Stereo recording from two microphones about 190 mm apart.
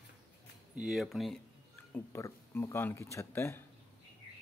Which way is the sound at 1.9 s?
15° left (ahead or behind).